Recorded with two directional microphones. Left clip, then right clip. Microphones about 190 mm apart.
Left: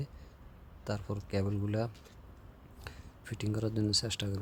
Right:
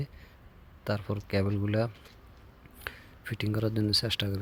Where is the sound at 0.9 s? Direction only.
10° right (ahead or behind).